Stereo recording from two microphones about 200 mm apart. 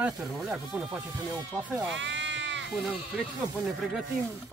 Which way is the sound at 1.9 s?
65° right (ahead or behind).